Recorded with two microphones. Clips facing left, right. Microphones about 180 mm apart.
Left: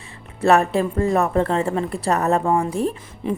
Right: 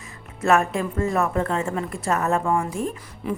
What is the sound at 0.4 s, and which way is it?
A woman's voice, 35° left (ahead or behind).